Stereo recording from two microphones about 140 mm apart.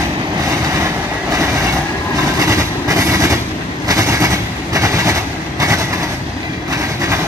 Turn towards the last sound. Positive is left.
turn(degrees=-25)  # may be behind; listen again after turning